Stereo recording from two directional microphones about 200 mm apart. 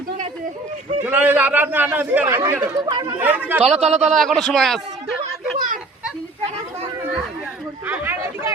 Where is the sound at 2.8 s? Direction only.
20° right (ahead or behind).